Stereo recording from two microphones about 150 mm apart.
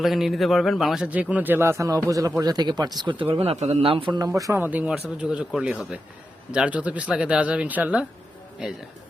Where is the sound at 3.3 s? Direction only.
40° right (ahead or behind).